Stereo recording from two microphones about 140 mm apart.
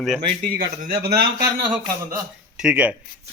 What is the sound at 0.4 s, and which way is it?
Speech, 90° right.